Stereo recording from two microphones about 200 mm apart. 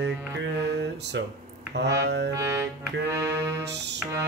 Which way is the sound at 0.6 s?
60° right (ahead or behind).